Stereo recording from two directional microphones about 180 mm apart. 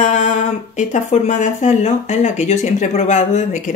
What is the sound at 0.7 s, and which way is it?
Speech, 40° left (ahead or behind).